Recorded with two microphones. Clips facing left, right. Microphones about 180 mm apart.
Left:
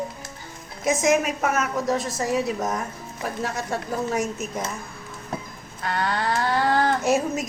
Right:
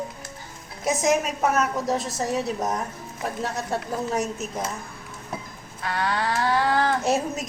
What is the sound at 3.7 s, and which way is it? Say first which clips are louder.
Speech: left 1 dB; 35° right (ahead or behind).